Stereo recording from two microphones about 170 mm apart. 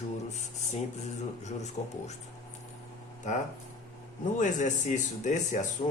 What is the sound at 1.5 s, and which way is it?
Speech, 40° left (ahead or behind).